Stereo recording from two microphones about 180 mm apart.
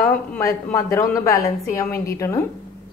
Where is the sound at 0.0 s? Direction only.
10° left (ahead or behind).